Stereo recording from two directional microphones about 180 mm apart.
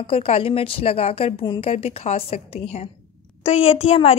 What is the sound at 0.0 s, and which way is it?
A woman's voice, 30° left (ahead or behind).